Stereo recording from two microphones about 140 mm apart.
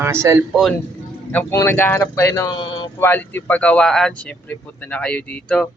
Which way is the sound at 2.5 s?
35° left (ahead or behind).